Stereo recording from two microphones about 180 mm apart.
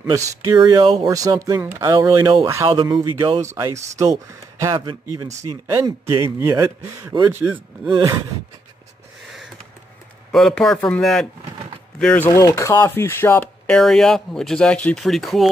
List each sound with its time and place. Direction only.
0.0 s speech: 20° right (ahead or behind)
10.3 s speech: centre (ahead or behind)
12.3 s speech: 20° left (ahead or behind); by 15.5 s centre (ahead or behind)